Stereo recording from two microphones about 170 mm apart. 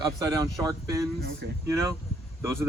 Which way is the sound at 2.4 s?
15° right (ahead or behind).